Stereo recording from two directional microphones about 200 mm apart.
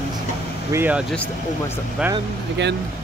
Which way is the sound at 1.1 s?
5° left (ahead or behind).